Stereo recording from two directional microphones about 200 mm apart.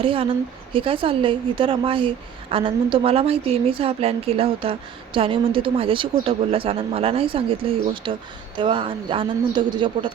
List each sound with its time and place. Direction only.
0.0 s a woman's voice: 25° right (ahead or behind)